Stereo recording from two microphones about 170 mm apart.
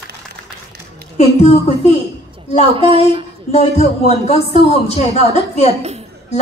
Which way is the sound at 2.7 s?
30° right (ahead or behind).